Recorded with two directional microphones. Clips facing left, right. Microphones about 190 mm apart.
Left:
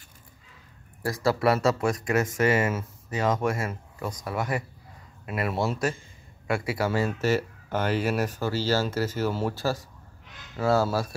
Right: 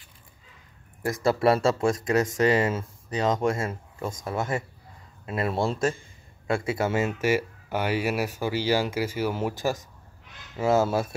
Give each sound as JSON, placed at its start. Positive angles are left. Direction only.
{"t": 1.0, "sound": "speech", "side_deg": -20}